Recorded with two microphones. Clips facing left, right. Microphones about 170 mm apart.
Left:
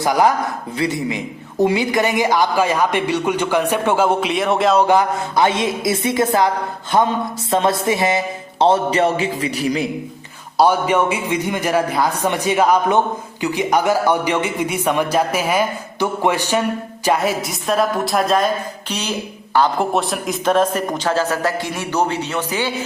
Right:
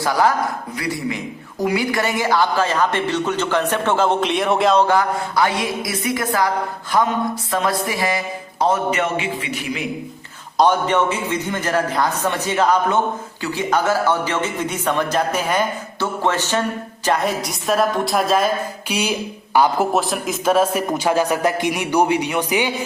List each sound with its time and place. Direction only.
0.0 s a man's voice: 20° left (ahead or behind); by 4.8 s centre (ahead or behind)
4.8 s music: 20° left (ahead or behind)
7.5 s a man's voice: 25° left (ahead or behind)
10.6 s a man's voice: 10° left (ahead or behind); by 22.7 s 15° right (ahead or behind)